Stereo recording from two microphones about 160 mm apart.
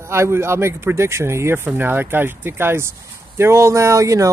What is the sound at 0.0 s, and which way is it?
Speech, 15° right (ahead or behind).